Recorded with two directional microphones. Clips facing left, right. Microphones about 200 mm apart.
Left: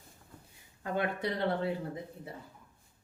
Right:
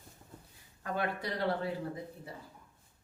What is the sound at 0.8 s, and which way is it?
Speech, 20° left (ahead or behind).